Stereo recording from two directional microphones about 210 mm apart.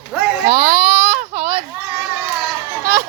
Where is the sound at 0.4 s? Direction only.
50° right (ahead or behind).